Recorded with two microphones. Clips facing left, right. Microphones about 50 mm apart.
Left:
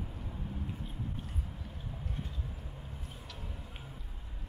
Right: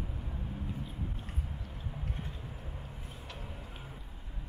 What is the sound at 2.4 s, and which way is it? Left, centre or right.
Vehicle, centre.